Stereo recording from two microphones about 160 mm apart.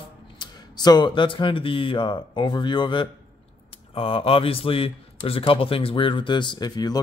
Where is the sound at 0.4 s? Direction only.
25° left (ahead or behind).